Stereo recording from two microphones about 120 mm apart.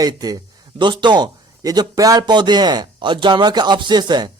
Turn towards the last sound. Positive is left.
turn(degrees=-35)  # may be behind; listen again after turning